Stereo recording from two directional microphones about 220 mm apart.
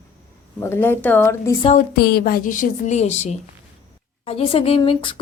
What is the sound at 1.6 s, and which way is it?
Speech, 30° left (ahead or behind).